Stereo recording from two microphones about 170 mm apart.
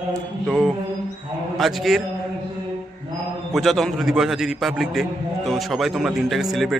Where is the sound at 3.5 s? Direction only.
Centre (ahead or behind).